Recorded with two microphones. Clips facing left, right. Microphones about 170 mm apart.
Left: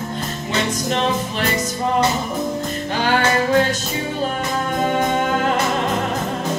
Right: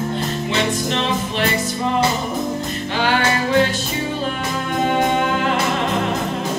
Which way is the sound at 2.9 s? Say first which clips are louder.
Left 1 dB; 45° left (ahead or behind).